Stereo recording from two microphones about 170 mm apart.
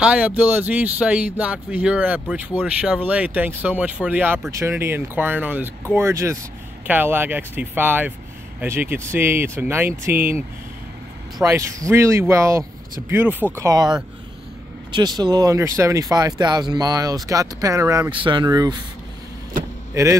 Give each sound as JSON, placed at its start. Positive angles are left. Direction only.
{"t": 0.0, "sound": "speech", "side_deg": -5}
{"t": 11.4, "sound": "speech", "side_deg": -20}
{"t": 18.1, "sound": "speech", "side_deg": -30}
{"t": 19.9, "sound": "speech", "side_deg": -15}